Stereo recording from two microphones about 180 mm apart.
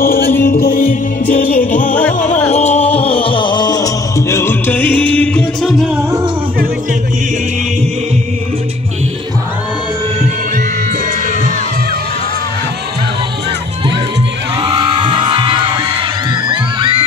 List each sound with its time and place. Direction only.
0.0 s music: 50° left (ahead or behind); by 5.9 s centre (ahead or behind)
14.6 s music: 30° right (ahead or behind)